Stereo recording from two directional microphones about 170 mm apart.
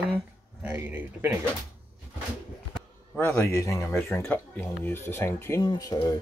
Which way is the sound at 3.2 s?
15° left (ahead or behind).